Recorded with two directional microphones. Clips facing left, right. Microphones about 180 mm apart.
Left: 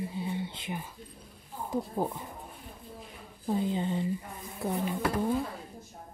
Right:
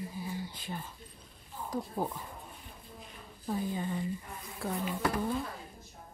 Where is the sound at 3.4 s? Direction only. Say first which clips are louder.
Left 4 dB; 20° left (ahead or behind).